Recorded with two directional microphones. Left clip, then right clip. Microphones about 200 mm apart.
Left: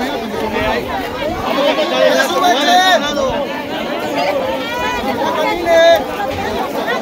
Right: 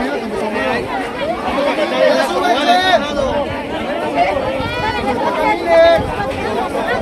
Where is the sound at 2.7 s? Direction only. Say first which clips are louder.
Left 2 dB; 25° left (ahead or behind).